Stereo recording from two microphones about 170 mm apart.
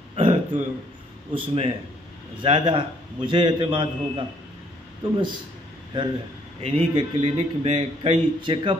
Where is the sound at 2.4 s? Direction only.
30° right (ahead or behind).